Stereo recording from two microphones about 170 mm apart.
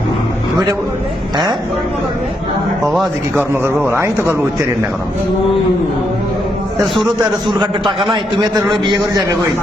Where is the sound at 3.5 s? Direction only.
15° right (ahead or behind).